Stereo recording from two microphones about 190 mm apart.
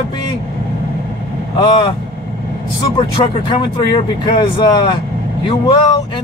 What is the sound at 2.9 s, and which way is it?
Speech, 25° left (ahead or behind).